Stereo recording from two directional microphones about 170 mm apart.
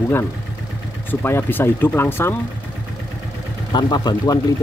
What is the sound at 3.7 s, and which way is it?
Speech, 25° left (ahead or behind).